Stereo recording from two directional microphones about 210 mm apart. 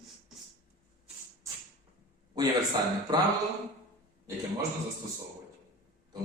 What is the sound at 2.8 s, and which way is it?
Speech, 20° right (ahead or behind).